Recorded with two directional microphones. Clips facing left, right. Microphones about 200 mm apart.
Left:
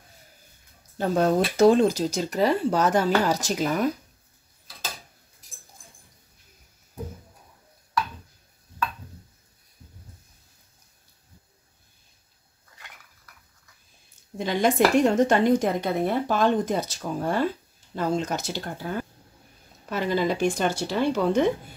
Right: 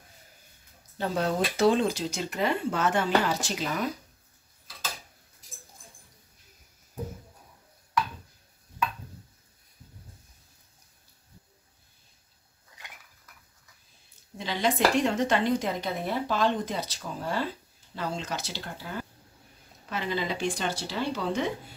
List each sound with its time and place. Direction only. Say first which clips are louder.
0.9 s a woman's voice: left 6 dB; 45° left (ahead or behind)
14.4 s a woman's voice: left 5 dB; 50° left (ahead or behind)